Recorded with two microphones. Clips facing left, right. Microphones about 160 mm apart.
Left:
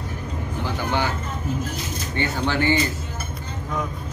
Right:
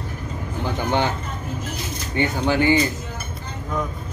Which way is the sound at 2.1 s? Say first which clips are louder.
Right 4 dB; 15° right (ahead or behind).